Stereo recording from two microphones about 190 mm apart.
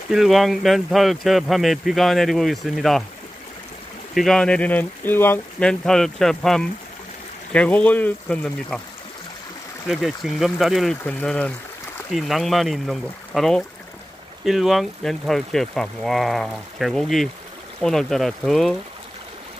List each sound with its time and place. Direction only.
0.1 s speech: centre (ahead or behind)
4.1 s speech: centre (ahead or behind)
9.8 s speech: centre (ahead or behind)